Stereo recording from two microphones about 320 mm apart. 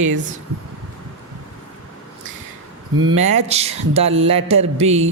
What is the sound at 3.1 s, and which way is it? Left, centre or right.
Speech, right.